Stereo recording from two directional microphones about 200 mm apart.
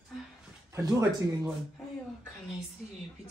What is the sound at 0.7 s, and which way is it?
Speech, 15° right (ahead or behind).